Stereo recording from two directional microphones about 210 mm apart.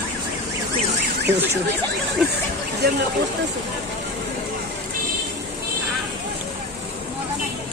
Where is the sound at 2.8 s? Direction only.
50° right (ahead or behind).